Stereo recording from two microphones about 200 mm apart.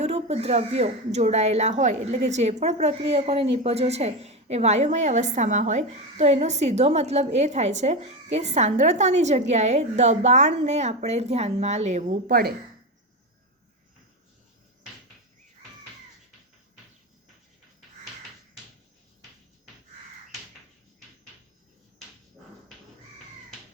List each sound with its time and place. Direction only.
0.0 s speech: 30° right (ahead or behind); by 12.5 s 50° right (ahead or behind)